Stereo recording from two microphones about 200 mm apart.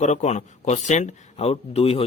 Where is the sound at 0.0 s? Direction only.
35° left (ahead or behind).